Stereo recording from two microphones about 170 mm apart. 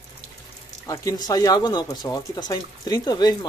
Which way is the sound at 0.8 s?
20° left (ahead or behind).